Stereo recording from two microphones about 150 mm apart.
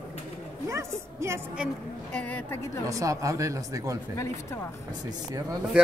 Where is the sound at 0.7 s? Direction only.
20° right (ahead or behind).